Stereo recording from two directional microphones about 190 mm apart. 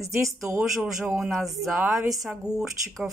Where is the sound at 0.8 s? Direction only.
Centre (ahead or behind).